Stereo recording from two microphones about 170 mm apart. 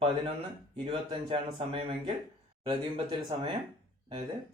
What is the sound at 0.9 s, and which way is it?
A man's voice, 30° right (ahead or behind).